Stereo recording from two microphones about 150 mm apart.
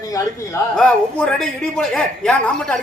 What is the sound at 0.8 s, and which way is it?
A man's voice, 5° left (ahead or behind).